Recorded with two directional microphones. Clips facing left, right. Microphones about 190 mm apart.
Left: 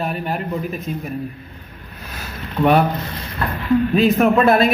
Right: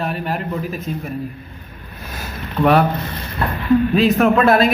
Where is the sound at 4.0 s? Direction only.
Centre (ahead or behind).